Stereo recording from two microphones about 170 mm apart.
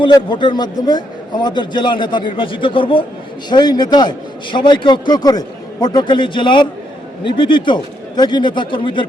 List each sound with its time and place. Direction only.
0.0 s a man's voice: 25° left (ahead or behind)